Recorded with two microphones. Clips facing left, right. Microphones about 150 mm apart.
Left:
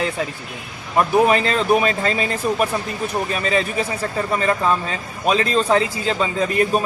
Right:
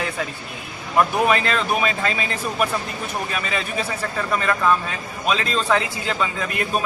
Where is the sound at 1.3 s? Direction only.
35° left (ahead or behind).